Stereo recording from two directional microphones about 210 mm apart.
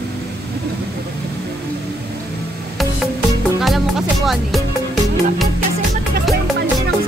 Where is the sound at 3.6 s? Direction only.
Centre (ahead or behind).